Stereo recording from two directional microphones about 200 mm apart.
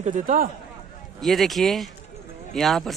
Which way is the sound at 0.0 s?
40° right (ahead or behind).